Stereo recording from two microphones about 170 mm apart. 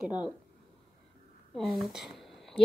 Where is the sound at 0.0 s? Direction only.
5° right (ahead or behind).